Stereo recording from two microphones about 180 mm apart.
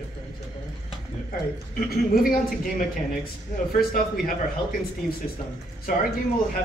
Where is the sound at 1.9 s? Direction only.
55° left (ahead or behind).